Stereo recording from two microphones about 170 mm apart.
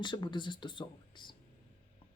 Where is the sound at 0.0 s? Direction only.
25° left (ahead or behind).